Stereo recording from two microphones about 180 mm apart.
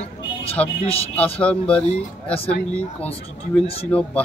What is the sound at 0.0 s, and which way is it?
Vehicle, 30° left (ahead or behind).